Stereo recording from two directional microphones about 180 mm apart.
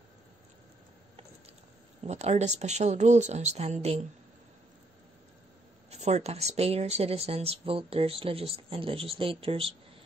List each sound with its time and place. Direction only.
2.0 s speech: 35° right (ahead or behind)
5.9 s speech: 40° right (ahead or behind)